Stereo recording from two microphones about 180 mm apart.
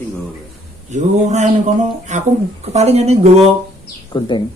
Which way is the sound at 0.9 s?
40° right (ahead or behind).